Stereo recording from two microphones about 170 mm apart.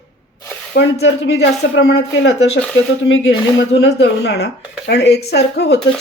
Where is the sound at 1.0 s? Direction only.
90° left.